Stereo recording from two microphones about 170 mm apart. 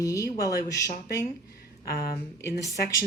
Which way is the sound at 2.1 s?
20° left (ahead or behind).